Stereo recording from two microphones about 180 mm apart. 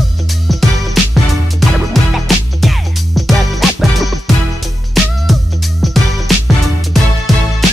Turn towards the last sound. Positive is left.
turn(degrees=0)  # may be behind; listen again after turning